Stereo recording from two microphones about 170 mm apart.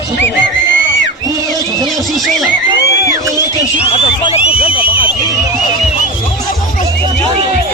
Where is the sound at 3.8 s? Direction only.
35° left (ahead or behind).